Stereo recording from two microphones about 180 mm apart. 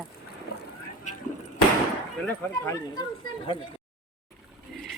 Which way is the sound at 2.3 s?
15° left (ahead or behind).